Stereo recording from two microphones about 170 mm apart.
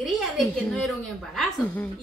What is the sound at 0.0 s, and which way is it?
A woman's voice, centre (ahead or behind).